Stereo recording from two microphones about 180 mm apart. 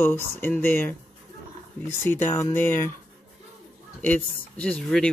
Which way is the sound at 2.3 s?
15° left (ahead or behind).